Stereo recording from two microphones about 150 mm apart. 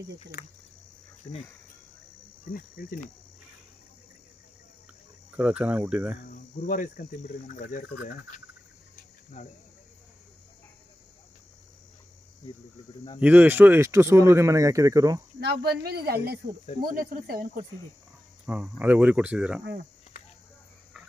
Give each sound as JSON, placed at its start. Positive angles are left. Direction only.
{"t": 0.4, "sound": "speech", "side_deg": 90}
{"t": 2.4, "sound": "speech", "side_deg": 70}
{"t": 5.3, "sound": "speech", "side_deg": -10}
{"t": 6.3, "sound": "cricket", "side_deg": 60}
{"t": 13.2, "sound": "speech", "side_deg": -10}
{"t": 15.4, "sound": "speech", "side_deg": -90}
{"t": 16.8, "sound": "speech", "side_deg": -75}
{"t": 18.4, "sound": "speech", "side_deg": -10}